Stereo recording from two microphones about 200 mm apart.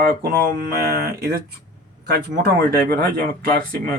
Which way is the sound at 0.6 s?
55° right (ahead or behind).